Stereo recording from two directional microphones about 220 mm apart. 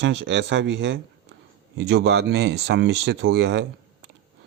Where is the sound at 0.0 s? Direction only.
55° right (ahead or behind).